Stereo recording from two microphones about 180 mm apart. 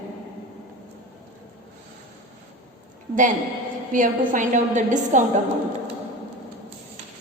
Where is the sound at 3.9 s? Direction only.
45° right (ahead or behind).